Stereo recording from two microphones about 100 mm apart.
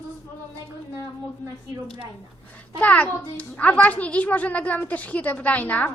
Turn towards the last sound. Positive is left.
turn(degrees=15)  # may be behind; listen again after turning